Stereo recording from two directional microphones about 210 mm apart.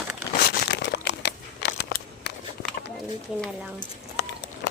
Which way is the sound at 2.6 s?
50° left (ahead or behind).